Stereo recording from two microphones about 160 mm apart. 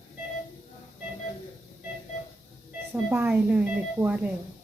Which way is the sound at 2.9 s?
10° right (ahead or behind).